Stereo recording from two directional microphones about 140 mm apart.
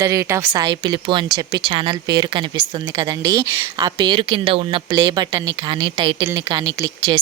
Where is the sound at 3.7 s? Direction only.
30° right (ahead or behind).